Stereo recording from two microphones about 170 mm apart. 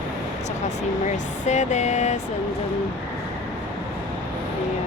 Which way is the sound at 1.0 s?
45° left (ahead or behind).